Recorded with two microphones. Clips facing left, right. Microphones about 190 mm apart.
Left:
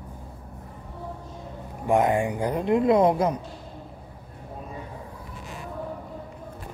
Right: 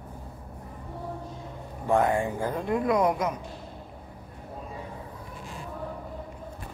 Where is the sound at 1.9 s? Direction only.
15° left (ahead or behind).